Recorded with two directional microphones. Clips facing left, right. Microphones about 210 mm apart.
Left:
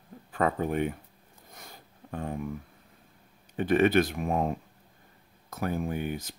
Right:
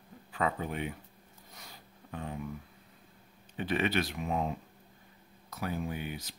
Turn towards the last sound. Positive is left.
turn(degrees=50)  # may be behind; listen again after turning